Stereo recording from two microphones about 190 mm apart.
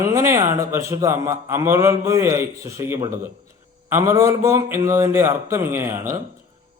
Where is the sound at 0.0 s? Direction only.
15° right (ahead or behind).